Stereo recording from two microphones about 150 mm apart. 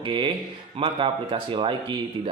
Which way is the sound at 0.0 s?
35° right (ahead or behind).